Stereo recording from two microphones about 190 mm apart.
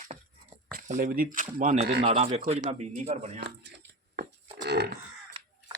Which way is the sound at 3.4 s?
55° right (ahead or behind).